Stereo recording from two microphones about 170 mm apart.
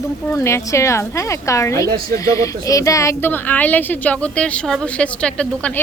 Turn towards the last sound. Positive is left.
turn(degrees=5)  # may be behind; listen again after turning